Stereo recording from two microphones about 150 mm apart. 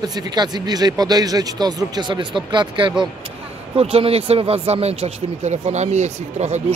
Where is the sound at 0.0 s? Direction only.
30° right (ahead or behind).